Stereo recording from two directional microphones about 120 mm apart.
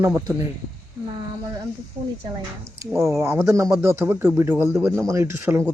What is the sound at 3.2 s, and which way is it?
Speech, 20° right (ahead or behind).